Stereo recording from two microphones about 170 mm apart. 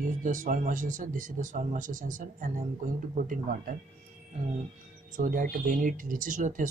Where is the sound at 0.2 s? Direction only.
50° right (ahead or behind).